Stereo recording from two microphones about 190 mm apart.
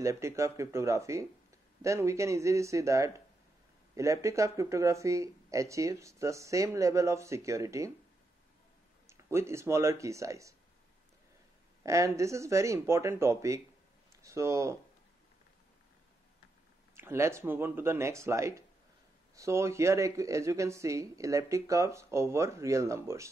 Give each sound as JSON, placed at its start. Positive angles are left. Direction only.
{"t": 0.0, "sound": "speech", "side_deg": -15}
{"t": 9.0, "sound": "speech", "side_deg": -15}
{"t": 11.8, "sound": "speech", "side_deg": -15}
{"t": 16.9, "sound": "speech", "side_deg": -15}